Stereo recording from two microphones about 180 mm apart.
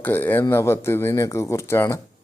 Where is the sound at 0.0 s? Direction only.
10° left (ahead or behind).